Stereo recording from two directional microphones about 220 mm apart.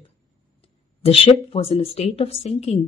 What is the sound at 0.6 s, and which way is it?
Speech, 25° left (ahead or behind).